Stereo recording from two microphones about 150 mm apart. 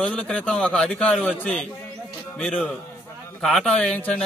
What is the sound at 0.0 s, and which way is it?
A man's voice, 5° left (ahead or behind).